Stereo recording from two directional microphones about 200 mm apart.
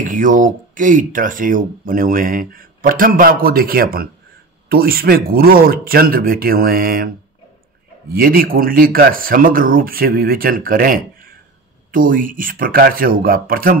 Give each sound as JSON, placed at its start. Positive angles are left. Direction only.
{"t": 0.0, "sound": "speech", "side_deg": -40}
{"t": 8.1, "sound": "speech", "side_deg": -45}